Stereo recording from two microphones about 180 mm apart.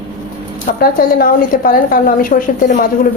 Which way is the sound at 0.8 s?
55° left (ahead or behind).